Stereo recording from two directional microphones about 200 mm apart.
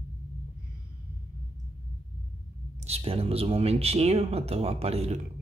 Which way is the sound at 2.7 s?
30° right (ahead or behind).